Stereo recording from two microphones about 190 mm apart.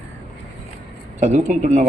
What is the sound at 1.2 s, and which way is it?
Speech, 35° right (ahead or behind).